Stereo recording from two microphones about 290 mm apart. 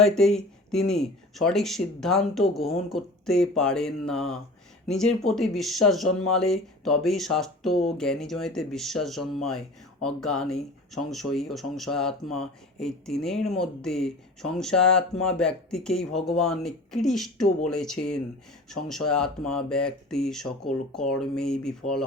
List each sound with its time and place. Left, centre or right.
0.2 s speech: centre